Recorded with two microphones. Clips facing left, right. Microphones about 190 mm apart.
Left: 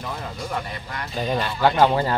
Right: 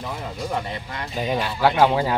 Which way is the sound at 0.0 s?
15° right (ahead or behind).